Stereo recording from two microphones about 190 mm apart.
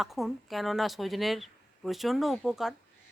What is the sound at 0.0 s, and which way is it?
Speech, centre (ahead or behind).